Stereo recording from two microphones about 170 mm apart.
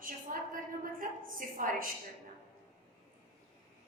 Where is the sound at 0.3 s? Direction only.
50° right (ahead or behind).